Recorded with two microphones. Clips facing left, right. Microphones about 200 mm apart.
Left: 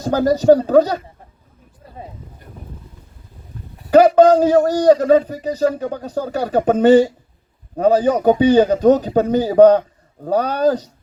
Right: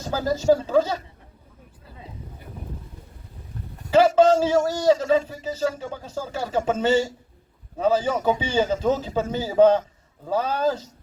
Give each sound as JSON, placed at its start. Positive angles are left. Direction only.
{"t": 0.0, "sound": "speech", "side_deg": 40}
{"t": 4.0, "sound": "a man's voice", "side_deg": 40}